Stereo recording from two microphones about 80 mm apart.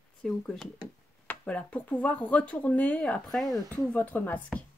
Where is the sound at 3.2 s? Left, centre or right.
Centre.